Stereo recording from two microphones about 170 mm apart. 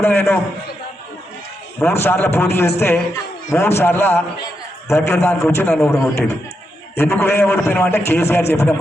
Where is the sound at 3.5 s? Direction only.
15° left (ahead or behind).